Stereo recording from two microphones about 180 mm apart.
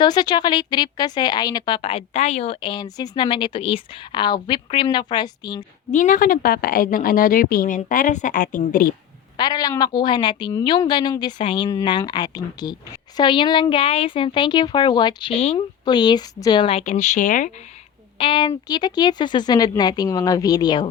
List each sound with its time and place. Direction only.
0.0 s a woman's voice: 25° left (ahead or behind)
5.9 s a woman's voice: 45° left (ahead or behind)
9.4 s a woman's voice: 20° left (ahead or behind); by 17.5 s 45° left (ahead or behind)
18.2 s a woman's voice: 30° left (ahead or behind)